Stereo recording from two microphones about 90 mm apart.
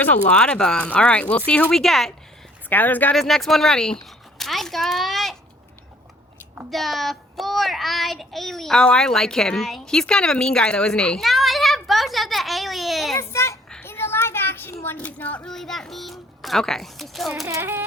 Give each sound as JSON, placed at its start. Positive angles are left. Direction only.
{"t": 0.0, "sound": "speech", "side_deg": 15}
{"t": 1.7, "sound": "child singing", "side_deg": 5}
{"t": 2.6, "sound": "speech", "side_deg": 20}
{"t": 3.2, "sound": "speech", "side_deg": 0}
{"t": 6.7, "sound": "child singing", "side_deg": 0}
{"t": 13.1, "sound": "a child's voice", "side_deg": 30}
{"t": 13.8, "sound": "child singing", "side_deg": 25}
{"t": 14.9, "sound": "child singing", "side_deg": 15}
{"t": 17.6, "sound": "a sound", "side_deg": -25}